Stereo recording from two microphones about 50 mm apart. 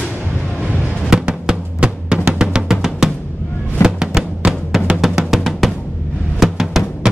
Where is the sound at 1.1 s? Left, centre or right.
Centre.